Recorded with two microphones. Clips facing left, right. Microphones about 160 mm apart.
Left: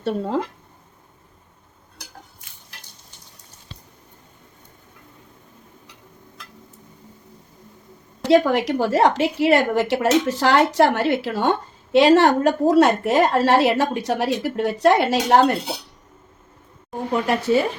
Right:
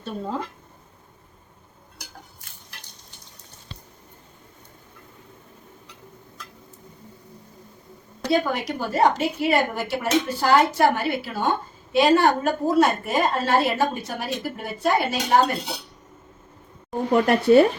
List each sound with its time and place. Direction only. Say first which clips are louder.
0.0 s a woman's voice: left 6 dB; 75° left (ahead or behind)
8.3 s a woman's voice: left 7 dB; 85° left
17.2 s speech: right 5 dB; 60° right (ahead or behind)